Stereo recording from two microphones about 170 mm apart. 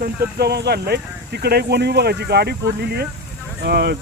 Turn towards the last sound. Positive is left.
turn(degrees=-75)  # may be behind; listen again after turning